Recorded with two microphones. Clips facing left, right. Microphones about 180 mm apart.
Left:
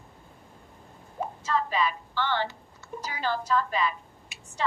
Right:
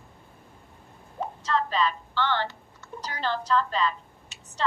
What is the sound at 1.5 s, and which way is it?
A woman's voice, 10° left (ahead or behind).